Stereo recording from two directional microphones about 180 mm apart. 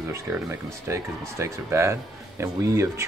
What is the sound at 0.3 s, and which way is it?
Speech, 15° right (ahead or behind).